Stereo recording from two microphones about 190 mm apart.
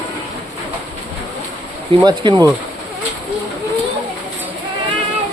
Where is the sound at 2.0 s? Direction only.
25° right (ahead or behind).